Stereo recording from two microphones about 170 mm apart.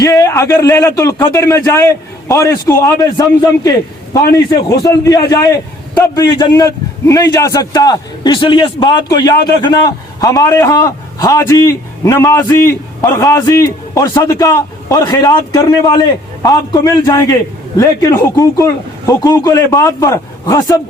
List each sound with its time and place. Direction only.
0.0 s a man's voice: 20° left (ahead or behind)